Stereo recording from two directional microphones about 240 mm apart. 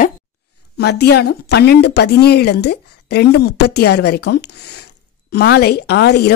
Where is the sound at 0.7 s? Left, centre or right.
Left.